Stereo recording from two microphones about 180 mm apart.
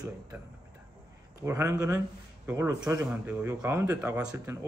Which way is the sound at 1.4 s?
15° right (ahead or behind).